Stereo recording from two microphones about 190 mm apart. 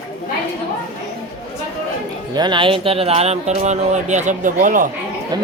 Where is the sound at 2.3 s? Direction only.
25° right (ahead or behind); by 4.9 s 45° right (ahead or behind).